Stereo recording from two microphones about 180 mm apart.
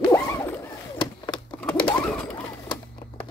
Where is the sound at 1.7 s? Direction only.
25° left (ahead or behind).